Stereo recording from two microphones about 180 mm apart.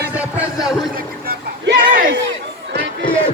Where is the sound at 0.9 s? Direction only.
55° right (ahead or behind).